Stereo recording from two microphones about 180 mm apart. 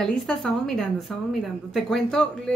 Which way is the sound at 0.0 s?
Centre (ahead or behind).